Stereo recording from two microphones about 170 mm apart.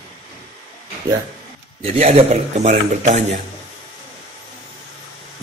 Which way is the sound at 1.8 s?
40° right (ahead or behind).